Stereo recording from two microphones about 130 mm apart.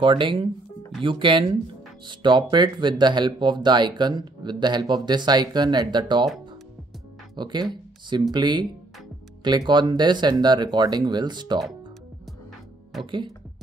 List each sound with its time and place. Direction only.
0.0 s speech: 40° right (ahead or behind)
7.3 s speech: 35° right (ahead or behind)
13.0 s speech: 40° right (ahead or behind)